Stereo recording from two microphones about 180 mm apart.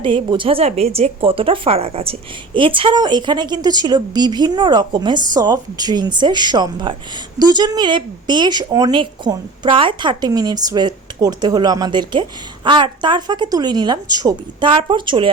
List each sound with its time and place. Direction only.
0.0 s a woman's voice: 25° right (ahead or behind)